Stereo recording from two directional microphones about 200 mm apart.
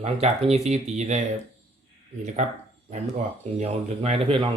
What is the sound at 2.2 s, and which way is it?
Speech, 35° right (ahead or behind).